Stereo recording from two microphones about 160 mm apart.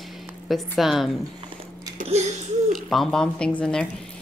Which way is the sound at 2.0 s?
45° right (ahead or behind).